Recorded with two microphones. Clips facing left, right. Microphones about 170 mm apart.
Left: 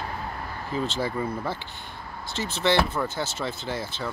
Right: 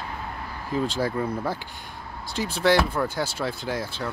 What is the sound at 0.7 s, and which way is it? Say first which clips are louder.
Speech: right 3 dB; 10° right (ahead or behind).